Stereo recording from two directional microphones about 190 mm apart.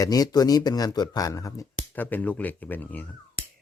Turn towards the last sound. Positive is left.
turn(degrees=10)  # may be behind; listen again after turning